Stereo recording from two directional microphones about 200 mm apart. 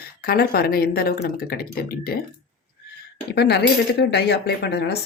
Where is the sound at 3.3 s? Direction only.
55° left (ahead or behind).